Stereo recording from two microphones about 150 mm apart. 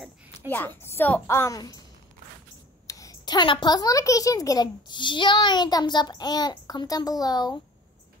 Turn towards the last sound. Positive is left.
turn(degrees=25)  # may be behind; listen again after turning